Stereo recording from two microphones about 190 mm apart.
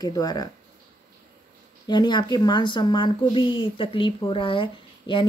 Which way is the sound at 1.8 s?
20° left (ahead or behind).